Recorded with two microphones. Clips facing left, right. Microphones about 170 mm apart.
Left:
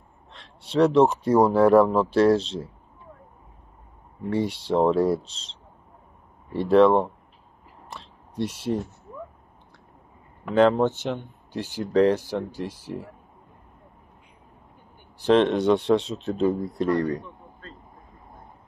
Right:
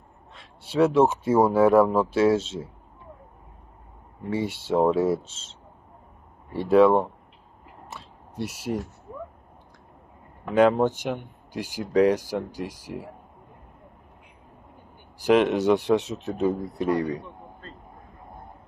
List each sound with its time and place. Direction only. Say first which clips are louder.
0.3 s speech: left 3 dB; 5° right (ahead or behind)
4.3 s speech: left 1 dB; 5° right (ahead or behind)
8.4 s speech: left 3 dB; 10° right (ahead or behind)
10.5 s speech: even; 10° right (ahead or behind)
15.1 s speech: left 1 dB; 10° right (ahead or behind)